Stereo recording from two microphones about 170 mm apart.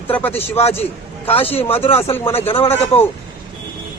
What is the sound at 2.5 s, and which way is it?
Speech, 35° left (ahead or behind).